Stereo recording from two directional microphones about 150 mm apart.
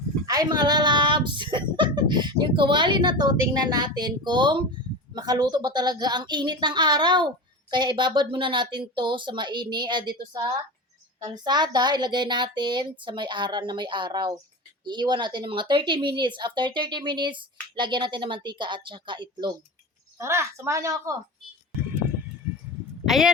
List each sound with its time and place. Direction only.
0.3 s a woman's voice: 25° right (ahead or behind)
20.1 s speech: 20° right (ahead or behind)
23.0 s speech: centre (ahead or behind)